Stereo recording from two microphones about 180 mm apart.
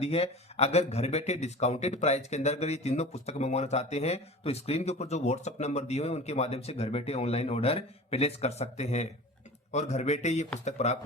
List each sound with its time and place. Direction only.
0.0 s a man's voice: 35° left (ahead or behind)